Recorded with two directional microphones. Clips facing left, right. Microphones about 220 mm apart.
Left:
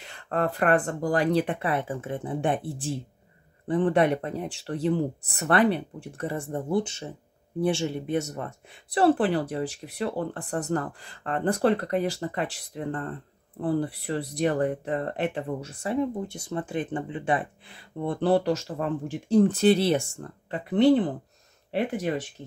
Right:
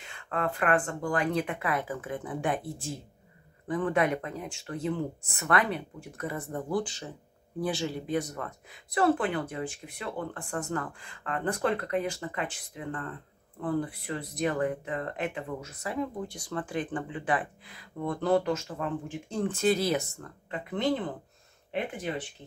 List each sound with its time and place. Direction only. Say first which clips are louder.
0.0 s speech: left 5 dB; 35° left (ahead or behind)